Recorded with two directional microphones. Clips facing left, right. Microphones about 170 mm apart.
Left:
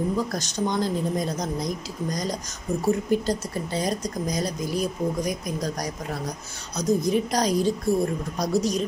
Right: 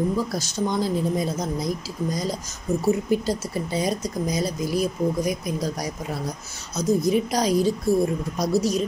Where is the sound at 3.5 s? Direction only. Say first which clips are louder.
Right 2 dB; 10° right (ahead or behind).